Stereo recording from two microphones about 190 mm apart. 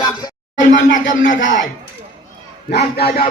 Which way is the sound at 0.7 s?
70° left (ahead or behind).